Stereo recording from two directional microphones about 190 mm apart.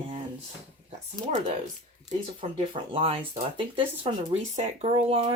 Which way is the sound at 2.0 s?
30° right (ahead or behind).